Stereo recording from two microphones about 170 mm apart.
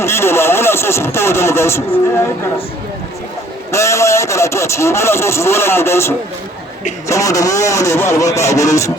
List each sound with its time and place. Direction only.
0.0 s speech: 15° left (ahead or behind)
3.7 s speech: 15° left (ahead or behind)